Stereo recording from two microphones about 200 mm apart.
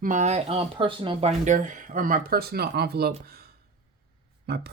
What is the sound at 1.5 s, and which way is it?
Speech, 40° right (ahead or behind).